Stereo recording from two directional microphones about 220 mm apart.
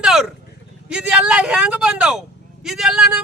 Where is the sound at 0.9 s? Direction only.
5° right (ahead or behind).